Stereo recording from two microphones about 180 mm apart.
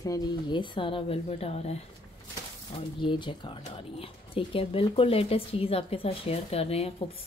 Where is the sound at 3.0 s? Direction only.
25° left (ahead or behind).